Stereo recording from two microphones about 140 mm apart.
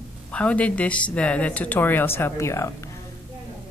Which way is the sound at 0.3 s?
10° left (ahead or behind).